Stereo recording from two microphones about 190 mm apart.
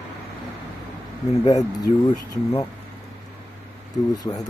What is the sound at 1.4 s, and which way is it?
Speech, 20° left (ahead or behind).